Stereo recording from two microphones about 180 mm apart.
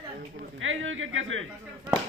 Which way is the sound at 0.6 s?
90° right.